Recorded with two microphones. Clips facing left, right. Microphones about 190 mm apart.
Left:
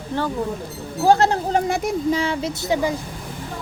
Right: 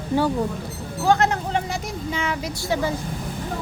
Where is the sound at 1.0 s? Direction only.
35° left (ahead or behind); by 3.0 s 15° left (ahead or behind).